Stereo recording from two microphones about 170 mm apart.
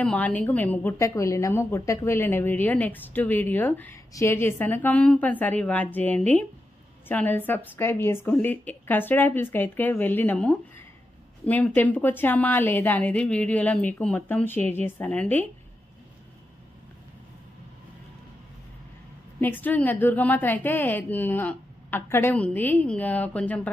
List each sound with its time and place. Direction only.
0.0 s a woman's voice: 10° left (ahead or behind)
19.4 s a woman's voice: 10° left (ahead or behind)